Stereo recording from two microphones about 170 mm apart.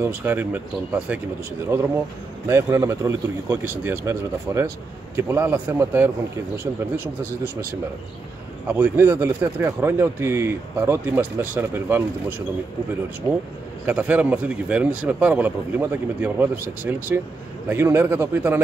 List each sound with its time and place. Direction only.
0.0 s speech: 10° right (ahead or behind)
8.7 s speech: 10° right (ahead or behind)
13.8 s speech: 10° right (ahead or behind)